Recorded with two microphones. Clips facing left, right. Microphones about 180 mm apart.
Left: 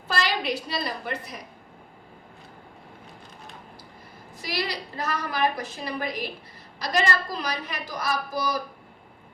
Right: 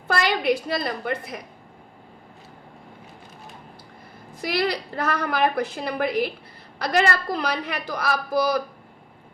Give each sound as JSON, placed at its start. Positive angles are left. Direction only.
{"t": 0.1, "sound": "a woman's voice", "side_deg": -55}
{"t": 4.4, "sound": "a woman's voice", "side_deg": -60}